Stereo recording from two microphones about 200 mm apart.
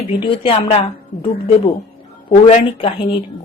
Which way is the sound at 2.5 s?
30° left (ahead or behind).